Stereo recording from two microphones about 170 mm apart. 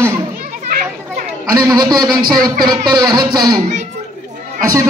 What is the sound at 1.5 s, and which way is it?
Speech, 25° right (ahead or behind).